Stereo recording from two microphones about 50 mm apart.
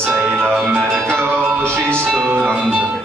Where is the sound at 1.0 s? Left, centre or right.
Right.